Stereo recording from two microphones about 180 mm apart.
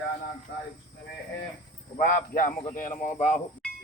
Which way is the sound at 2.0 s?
50° left (ahead or behind).